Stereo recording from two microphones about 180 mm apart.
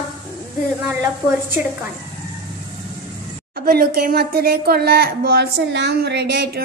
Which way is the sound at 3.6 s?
55° right (ahead or behind).